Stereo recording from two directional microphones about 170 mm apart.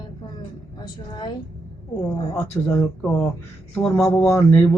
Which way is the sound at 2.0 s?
25° left (ahead or behind).